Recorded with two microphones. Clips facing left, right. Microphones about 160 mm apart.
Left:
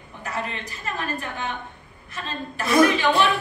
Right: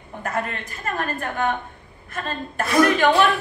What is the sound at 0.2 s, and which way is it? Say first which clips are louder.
A woman's voice: right 4 dB; 50° right (ahead or behind).